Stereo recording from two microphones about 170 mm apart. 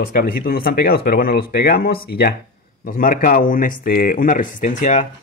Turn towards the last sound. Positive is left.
turn(degrees=45)  # may be behind; listen again after turning